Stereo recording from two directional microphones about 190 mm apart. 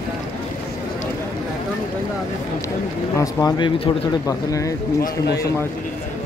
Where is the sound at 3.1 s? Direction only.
20° left (ahead or behind).